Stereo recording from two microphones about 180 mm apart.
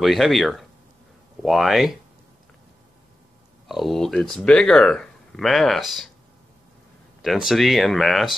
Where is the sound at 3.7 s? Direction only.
Centre (ahead or behind).